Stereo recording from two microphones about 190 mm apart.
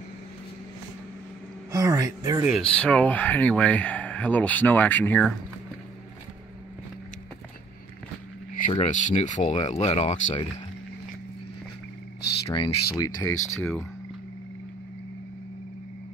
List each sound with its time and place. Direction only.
1.7 s speech: 15° right (ahead or behind)
2.5 s speech: 5° left (ahead or behind)
8.5 s speech: 40° left (ahead or behind)
12.4 s speech: 30° left (ahead or behind)
12.9 s speech: 20° left (ahead or behind)